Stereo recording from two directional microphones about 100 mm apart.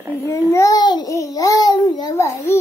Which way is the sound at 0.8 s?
45° left (ahead or behind).